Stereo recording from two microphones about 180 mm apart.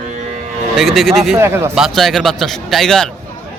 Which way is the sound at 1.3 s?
15° right (ahead or behind).